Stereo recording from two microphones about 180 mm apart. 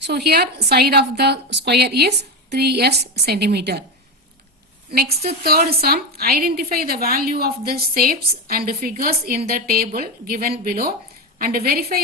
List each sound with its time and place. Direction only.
0.1 s a woman's voice: 65° right (ahead or behind)
5.2 s a woman's voice: 55° right (ahead or behind)